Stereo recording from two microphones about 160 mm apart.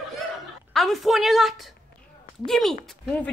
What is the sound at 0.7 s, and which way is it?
A woman's voice, centre (ahead or behind).